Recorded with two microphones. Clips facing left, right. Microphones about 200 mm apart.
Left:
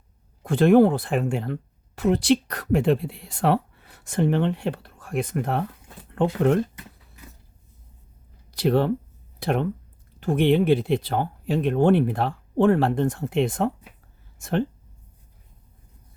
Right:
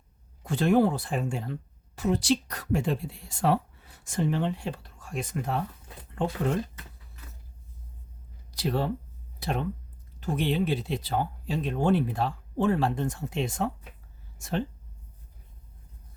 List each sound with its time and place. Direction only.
0.4 s speech: 55° left (ahead or behind)
8.4 s speech: 60° left (ahead or behind)